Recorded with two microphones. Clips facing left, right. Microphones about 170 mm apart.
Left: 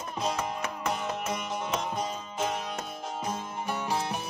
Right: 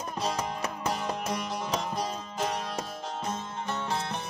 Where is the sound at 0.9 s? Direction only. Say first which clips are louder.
Even; centre (ahead or behind).